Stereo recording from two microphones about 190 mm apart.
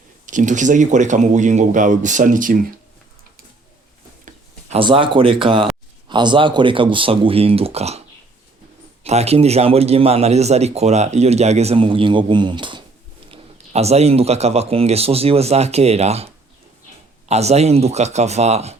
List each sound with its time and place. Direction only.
0.3 s a man's voice: 40° right (ahead or behind)
4.3 s speech: 30° right (ahead or behind)
9.0 s a man's voice: 35° right (ahead or behind)